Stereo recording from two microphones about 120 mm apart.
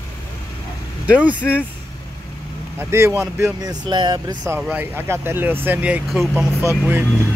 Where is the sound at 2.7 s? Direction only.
20° right (ahead or behind).